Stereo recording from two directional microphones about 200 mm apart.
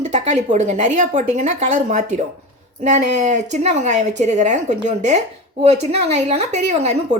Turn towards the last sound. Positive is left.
turn(degrees=-35)  # may be behind; listen again after turning